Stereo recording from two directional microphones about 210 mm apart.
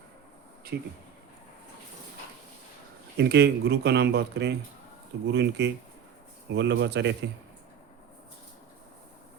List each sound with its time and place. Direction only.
0.7 s speech: 55° right (ahead or behind)
3.2 s speech: 50° right (ahead or behind)